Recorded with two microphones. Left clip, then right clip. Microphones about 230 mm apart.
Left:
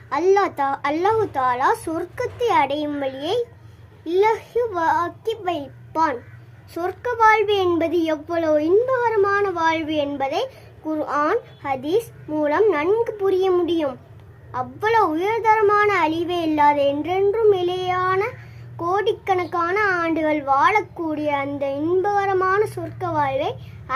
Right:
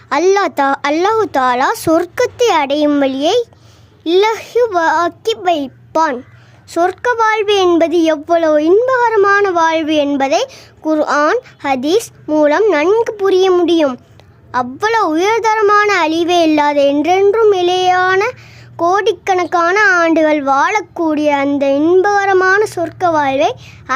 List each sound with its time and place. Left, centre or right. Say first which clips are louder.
0.1 s a woman's voice: right 6 dB; right